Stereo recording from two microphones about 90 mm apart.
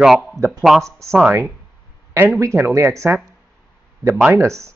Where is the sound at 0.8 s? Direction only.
35° right (ahead or behind).